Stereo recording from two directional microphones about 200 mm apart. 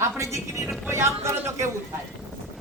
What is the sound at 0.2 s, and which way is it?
A man's voice, 15° right (ahead or behind).